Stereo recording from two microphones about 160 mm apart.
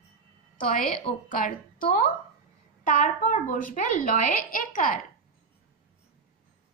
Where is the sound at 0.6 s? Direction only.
60° left (ahead or behind).